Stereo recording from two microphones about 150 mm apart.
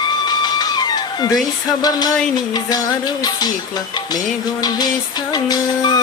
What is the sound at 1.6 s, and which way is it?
Speech, 25° left (ahead or behind).